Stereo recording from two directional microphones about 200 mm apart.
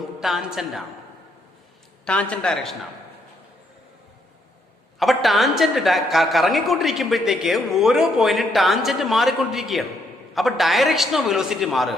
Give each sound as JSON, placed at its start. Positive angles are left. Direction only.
{"t": 0.2, "sound": "a woman's voice", "side_deg": 0}
{"t": 2.0, "sound": "a woman's voice", "side_deg": 5}
{"t": 4.9, "sound": "a woman's voice", "side_deg": 0}